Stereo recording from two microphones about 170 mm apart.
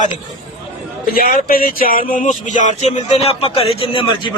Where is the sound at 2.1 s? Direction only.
50° left (ahead or behind); by 4.3 s 30° left (ahead or behind).